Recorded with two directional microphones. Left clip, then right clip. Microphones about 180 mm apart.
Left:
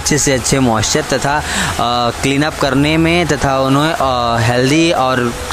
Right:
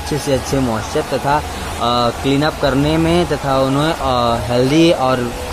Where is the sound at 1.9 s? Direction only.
20° left (ahead or behind).